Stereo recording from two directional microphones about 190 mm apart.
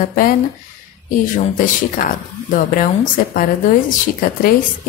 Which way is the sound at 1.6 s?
45° left (ahead or behind).